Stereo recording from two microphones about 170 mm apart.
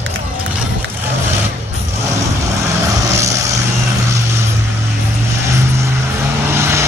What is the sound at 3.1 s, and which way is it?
Vehicle, 20° right (ahead or behind).